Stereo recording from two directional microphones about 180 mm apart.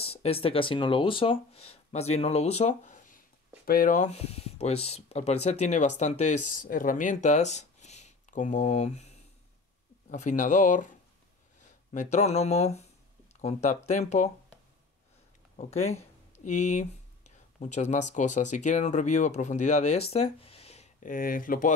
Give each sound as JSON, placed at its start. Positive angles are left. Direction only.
{"t": 0.0, "sound": "speech", "side_deg": 35}
{"t": 10.1, "sound": "speech", "side_deg": 40}
{"t": 11.9, "sound": "speech", "side_deg": 40}
{"t": 15.5, "sound": "speech", "side_deg": 35}